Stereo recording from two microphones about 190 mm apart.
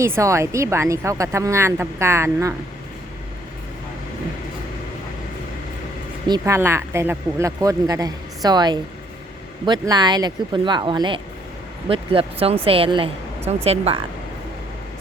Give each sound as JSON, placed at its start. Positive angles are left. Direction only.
{"t": 0.0, "sound": "speech", "side_deg": -15}
{"t": 6.2, "sound": "speech", "side_deg": -20}